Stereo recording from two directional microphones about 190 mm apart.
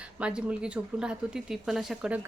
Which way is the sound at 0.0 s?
5° right (ahead or behind).